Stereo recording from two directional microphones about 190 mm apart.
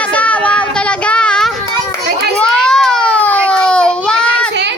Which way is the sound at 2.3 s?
5° left (ahead or behind).